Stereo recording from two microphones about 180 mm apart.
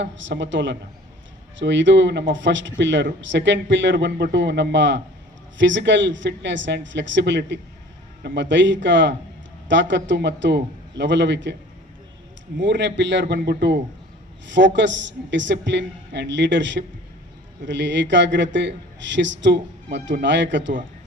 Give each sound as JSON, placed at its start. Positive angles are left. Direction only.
{"t": 0.0, "sound": "a woman's voice", "side_deg": -85}
{"t": 12.5, "sound": "a woman's voice", "side_deg": -85}
{"t": 14.4, "sound": "a woman's voice", "side_deg": -90}